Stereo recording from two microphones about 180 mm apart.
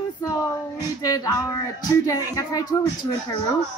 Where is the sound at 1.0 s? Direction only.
20° left (ahead or behind).